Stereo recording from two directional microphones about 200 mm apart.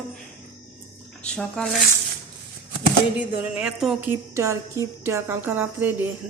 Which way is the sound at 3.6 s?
Centre (ahead or behind).